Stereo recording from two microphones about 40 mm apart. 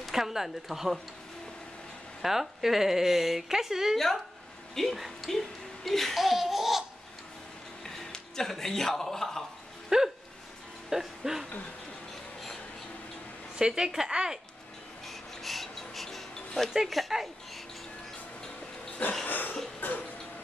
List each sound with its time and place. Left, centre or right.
0.1 s speech: centre
2.2 s speech: centre
3.9 s a woman's voice: centre
4.9 s speech: centre
5.9 s speech: centre
7.8 s a sound: centre
9.8 s a sound: centre
10.9 s speech: centre
13.6 s speech: centre
15.0 s filing: centre
16.7 s a woman's voice: centre
19.2 s cough: left
19.8 s a sound: left